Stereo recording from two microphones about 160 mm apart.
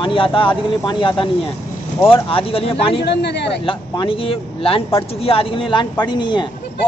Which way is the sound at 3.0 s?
90° left.